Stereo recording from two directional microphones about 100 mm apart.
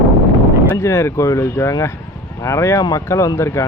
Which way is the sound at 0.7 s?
30° left (ahead or behind).